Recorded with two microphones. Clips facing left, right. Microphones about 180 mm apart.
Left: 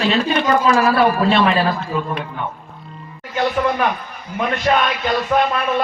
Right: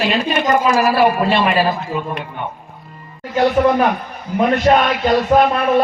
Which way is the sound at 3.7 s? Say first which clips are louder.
Right 4 dB; 40° right (ahead or behind).